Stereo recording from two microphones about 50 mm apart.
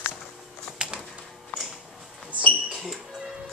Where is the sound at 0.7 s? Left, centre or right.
Centre.